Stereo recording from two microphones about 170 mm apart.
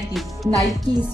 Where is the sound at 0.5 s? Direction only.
20° right (ahead or behind).